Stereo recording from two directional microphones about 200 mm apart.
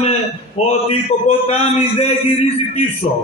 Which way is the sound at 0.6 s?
35° left (ahead or behind).